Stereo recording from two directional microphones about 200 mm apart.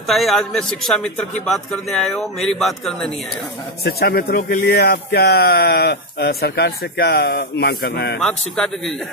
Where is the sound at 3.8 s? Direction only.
50° left (ahead or behind).